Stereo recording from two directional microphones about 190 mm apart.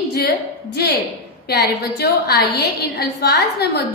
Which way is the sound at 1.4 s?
60° left (ahead or behind).